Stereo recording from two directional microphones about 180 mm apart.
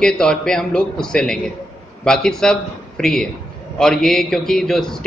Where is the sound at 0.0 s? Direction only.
5° left (ahead or behind).